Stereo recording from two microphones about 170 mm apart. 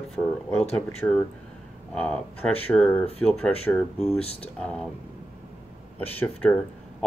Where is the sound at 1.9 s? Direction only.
5° left (ahead or behind).